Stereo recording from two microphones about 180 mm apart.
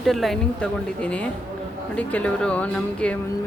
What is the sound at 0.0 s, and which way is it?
A woman's voice, centre (ahead or behind).